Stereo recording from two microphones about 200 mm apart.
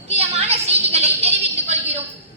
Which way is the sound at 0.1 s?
30° right (ahead or behind).